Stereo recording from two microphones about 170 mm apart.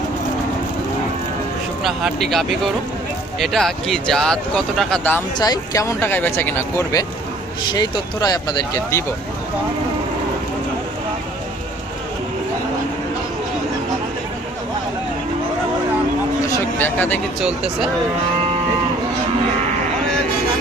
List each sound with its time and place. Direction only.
1.8 s speech: centre (ahead or behind)
5.4 s speech: 20° left (ahead or behind)
16.5 s a sound: 15° left (ahead or behind)
17.4 s speech: 5° right (ahead or behind)